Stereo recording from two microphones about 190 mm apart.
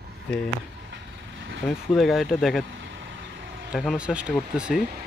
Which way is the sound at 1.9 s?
Centre (ahead or behind).